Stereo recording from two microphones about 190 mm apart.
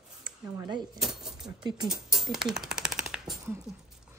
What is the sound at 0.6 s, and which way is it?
Speech, 25° right (ahead or behind).